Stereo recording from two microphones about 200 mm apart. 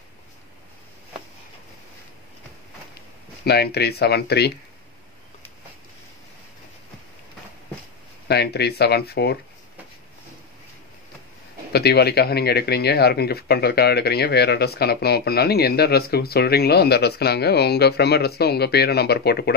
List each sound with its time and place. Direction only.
3.4 s speech: 55° left (ahead or behind)
8.3 s speech: 55° left (ahead or behind)
11.7 s speech: 55° left (ahead or behind)